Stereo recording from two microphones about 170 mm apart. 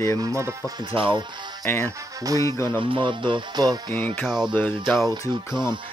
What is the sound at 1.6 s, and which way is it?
Music, 15° left (ahead or behind).